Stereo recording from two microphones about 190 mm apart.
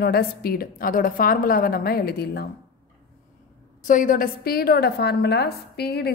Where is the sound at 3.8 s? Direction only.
45° left (ahead or behind).